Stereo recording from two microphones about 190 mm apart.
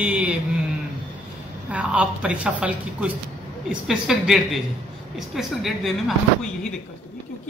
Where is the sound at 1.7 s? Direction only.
5° right (ahead or behind).